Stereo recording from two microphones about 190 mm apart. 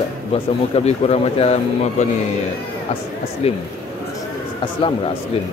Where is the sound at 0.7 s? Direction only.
35° left (ahead or behind).